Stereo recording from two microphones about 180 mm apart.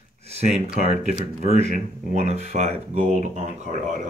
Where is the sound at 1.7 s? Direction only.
40° right (ahead or behind).